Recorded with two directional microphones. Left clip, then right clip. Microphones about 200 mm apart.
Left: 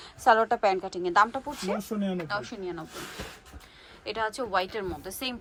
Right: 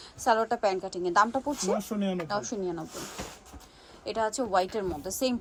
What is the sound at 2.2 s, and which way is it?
Speech, 25° right (ahead or behind).